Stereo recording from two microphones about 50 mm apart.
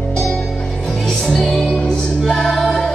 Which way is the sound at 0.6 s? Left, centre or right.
Centre.